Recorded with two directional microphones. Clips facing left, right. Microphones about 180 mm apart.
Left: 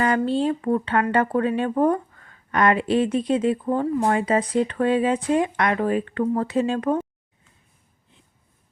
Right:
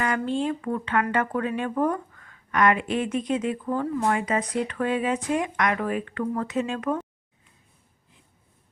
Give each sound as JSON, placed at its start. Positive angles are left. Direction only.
{"t": 0.0, "sound": "speech", "side_deg": 35}